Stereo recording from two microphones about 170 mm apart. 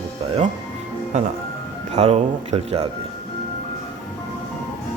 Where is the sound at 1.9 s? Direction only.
40° right (ahead or behind).